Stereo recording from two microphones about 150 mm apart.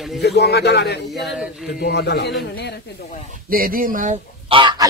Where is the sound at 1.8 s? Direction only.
90° left.